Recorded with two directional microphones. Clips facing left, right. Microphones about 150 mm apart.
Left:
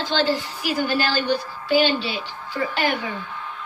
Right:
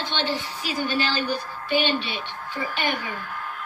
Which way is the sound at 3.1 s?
5° right (ahead or behind).